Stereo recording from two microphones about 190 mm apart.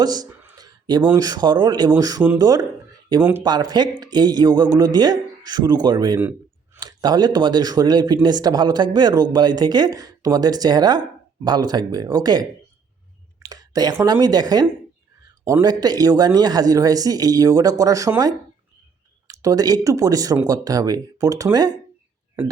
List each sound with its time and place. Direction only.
0.0 s a sound: 20° right (ahead or behind)
1.1 s speech: 20° right (ahead or behind)
3.2 s speech: 5° right (ahead or behind)
3.4 s speech: 20° right (ahead or behind)
13.5 s speech: 20° right (ahead or behind)